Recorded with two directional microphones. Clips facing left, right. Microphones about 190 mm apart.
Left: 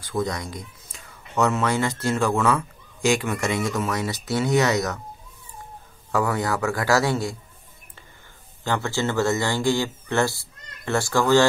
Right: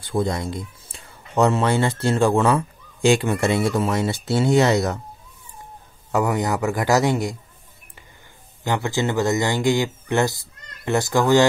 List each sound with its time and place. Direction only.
0.0 s speech: 30° right (ahead or behind)
6.1 s speech: 20° right (ahead or behind)
8.6 s speech: 15° right (ahead or behind)